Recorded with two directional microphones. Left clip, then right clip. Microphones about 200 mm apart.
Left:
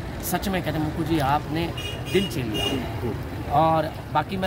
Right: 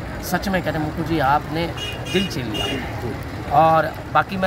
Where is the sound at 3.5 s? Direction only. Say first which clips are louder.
Right 6 dB; centre (ahead or behind).